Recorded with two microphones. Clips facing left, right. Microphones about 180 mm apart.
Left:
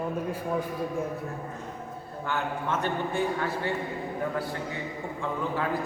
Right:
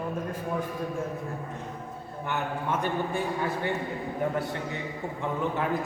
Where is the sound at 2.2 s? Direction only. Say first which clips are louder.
Even; 15° right (ahead or behind).